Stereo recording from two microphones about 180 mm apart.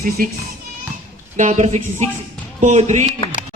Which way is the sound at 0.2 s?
55° right (ahead or behind).